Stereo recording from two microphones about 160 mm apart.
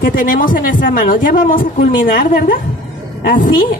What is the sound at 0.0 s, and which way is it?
Speech, 60° left (ahead or behind).